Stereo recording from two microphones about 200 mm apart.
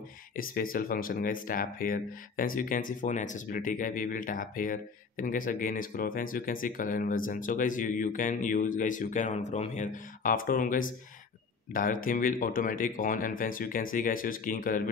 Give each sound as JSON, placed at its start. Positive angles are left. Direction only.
{"t": 0.4, "sound": "speech", "side_deg": 45}